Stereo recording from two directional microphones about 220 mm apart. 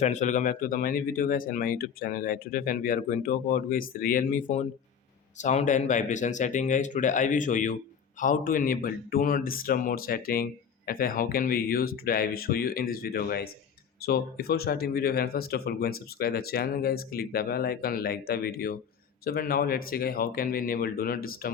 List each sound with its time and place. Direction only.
0.0 s speech: 30° left (ahead or behind)